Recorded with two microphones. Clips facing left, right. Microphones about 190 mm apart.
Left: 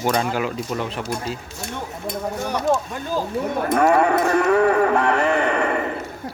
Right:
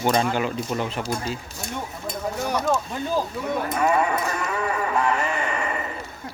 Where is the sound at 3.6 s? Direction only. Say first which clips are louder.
Left 6 dB; 60° left (ahead or behind).